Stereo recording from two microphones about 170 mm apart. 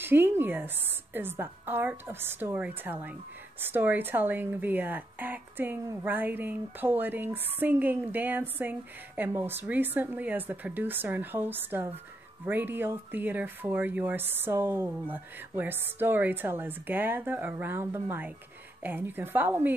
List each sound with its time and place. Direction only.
0.0 s speech: 10° right (ahead or behind)